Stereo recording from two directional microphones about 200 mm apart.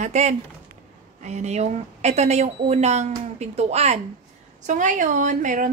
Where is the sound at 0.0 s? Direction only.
35° right (ahead or behind).